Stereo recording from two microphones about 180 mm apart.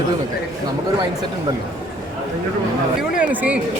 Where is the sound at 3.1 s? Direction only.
10° right (ahead or behind).